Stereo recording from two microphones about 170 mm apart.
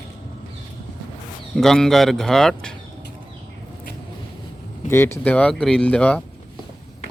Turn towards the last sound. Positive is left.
turn(degrees=10)  # may be behind; listen again after turning